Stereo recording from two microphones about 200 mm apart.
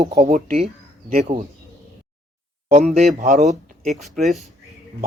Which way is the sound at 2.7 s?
35° right (ahead or behind).